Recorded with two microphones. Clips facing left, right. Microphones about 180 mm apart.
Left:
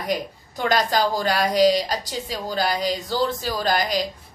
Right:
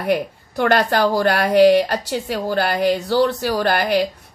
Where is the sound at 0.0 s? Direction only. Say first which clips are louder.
Right 6 dB; 65° right (ahead or behind).